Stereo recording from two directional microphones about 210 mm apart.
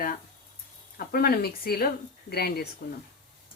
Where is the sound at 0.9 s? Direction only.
45° left (ahead or behind).